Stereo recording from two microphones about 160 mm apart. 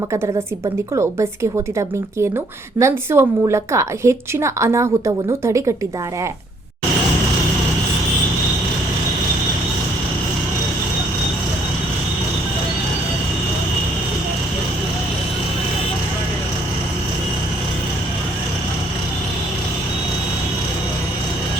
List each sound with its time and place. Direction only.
0.9 s a woman's voice: 20° right (ahead or behind)
2.7 s a woman's voice: 15° right (ahead or behind)